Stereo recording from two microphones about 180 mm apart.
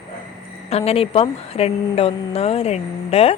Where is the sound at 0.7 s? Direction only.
35° left (ahead or behind).